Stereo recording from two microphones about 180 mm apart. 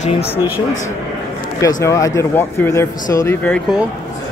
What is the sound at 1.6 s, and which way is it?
Speech, 20° left (ahead or behind).